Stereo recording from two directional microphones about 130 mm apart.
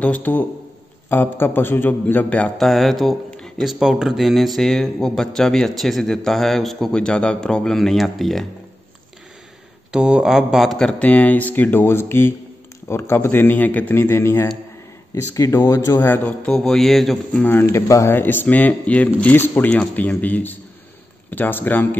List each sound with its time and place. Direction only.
0.0 s a man's voice: 10° left (ahead or behind)
9.8 s speech: 5° right (ahead or behind); by 16.0 s 25° left (ahead or behind)
16.0 s a man's voice: 15° left (ahead or behind)
17.4 s speech: 15° left (ahead or behind)